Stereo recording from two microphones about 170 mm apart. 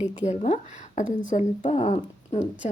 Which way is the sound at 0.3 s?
40° left (ahead or behind).